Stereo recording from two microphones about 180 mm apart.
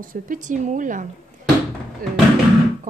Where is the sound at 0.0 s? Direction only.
50° right (ahead or behind).